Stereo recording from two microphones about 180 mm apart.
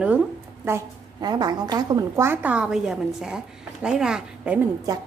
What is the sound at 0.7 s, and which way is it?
A woman's voice, 20° right (ahead or behind).